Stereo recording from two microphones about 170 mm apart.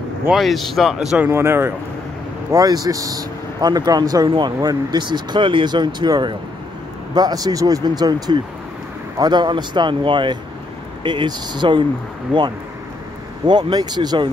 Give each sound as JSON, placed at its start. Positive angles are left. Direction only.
{"t": 0.3, "sound": "speech", "side_deg": 0}
{"t": 13.5, "sound": "speech", "side_deg": -25}